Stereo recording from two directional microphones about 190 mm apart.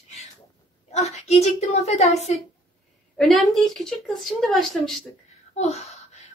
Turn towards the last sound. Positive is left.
turn(degrees=35)  # may be behind; listen again after turning